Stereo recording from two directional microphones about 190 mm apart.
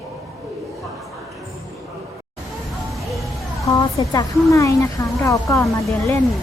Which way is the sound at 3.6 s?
15° left (ahead or behind).